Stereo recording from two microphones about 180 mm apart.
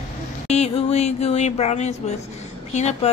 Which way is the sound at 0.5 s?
35° left (ahead or behind).